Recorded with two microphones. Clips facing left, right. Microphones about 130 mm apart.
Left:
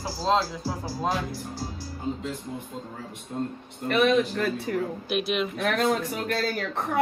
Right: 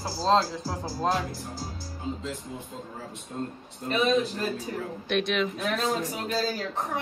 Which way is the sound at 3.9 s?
65° left (ahead or behind).